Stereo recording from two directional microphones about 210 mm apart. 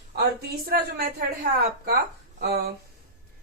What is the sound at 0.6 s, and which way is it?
Speech, 45° right (ahead or behind).